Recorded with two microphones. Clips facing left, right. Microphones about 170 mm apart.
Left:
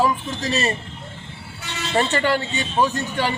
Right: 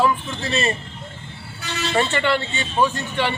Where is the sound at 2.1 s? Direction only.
40° left (ahead or behind).